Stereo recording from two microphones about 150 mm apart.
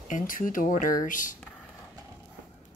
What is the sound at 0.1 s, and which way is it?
Speech, 60° left (ahead or behind).